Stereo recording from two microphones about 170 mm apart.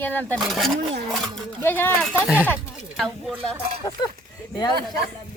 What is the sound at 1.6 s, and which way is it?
Speech, 10° left (ahead or behind).